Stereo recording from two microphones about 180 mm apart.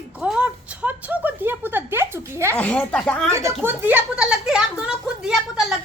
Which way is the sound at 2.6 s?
5° left (ahead or behind).